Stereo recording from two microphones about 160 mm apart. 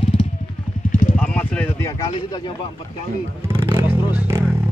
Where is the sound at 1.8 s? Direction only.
25° left (ahead or behind).